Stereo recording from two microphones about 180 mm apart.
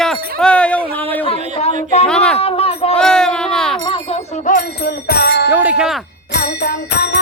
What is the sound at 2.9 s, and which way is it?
Speech, 5° left (ahead or behind).